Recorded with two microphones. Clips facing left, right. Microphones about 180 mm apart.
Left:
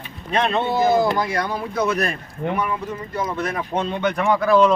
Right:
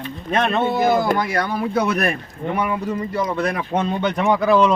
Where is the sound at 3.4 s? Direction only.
70° right (ahead or behind).